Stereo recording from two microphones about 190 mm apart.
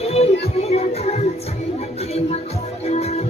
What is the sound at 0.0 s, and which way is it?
Music, 35° left (ahead or behind).